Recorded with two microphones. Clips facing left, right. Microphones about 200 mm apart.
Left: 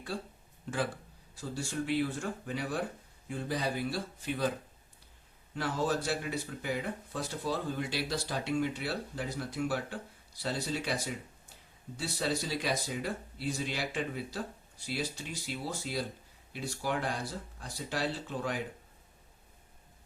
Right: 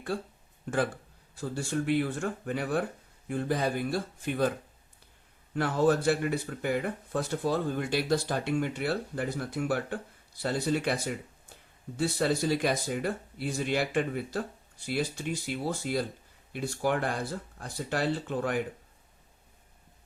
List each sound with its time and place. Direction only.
0.7 s speech: 50° right (ahead or behind)
5.5 s speech: 55° right (ahead or behind)